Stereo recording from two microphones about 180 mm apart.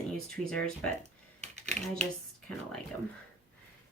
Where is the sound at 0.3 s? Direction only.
5° left (ahead or behind).